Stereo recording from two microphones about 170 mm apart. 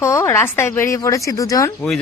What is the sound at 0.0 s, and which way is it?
A man's voice, 15° left (ahead or behind).